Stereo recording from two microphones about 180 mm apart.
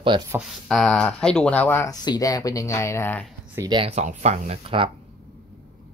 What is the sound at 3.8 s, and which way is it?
Speech, 40° right (ahead or behind).